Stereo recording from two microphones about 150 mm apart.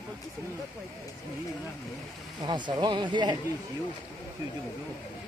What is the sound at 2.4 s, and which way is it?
Speech, 30° right (ahead or behind).